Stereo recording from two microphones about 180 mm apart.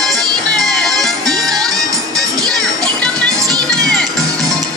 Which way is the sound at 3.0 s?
5° left (ahead or behind).